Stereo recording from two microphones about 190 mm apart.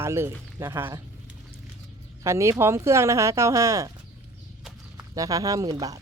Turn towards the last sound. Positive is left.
turn(degrees=-20)  # may be behind; listen again after turning